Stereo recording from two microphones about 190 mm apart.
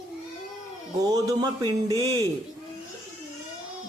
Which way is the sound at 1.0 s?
20° right (ahead or behind).